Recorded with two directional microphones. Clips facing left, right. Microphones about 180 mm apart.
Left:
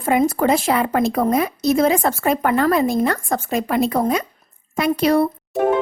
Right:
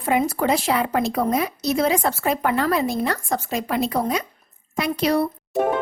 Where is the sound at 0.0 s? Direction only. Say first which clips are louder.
Left 4 dB; 45° left (ahead or behind).